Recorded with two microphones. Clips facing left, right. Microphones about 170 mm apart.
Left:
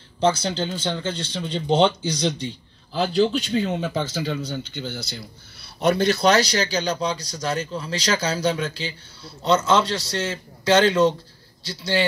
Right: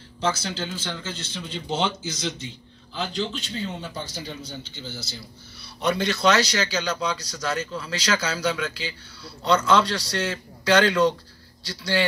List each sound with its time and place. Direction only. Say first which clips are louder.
0.2 s speech: left 6 dB; 30° left (ahead or behind)
1.1 s a man's voice: left 6 dB; 5° right (ahead or behind)
2.4 s a sound: left 7 dB; 40° left (ahead or behind)
3.2 s speech: left 11 dB; 55° left (ahead or behind); by 4.0 s 75° left (ahead or behind)
4.1 s speech: left 9 dB; 90° left
4.5 s speech: left 7 dB; 65° left (ahead or behind)
5.8 s a man's voice: left 5 dB; 40° left (ahead or behind); by 12.0 s 20° left (ahead or behind)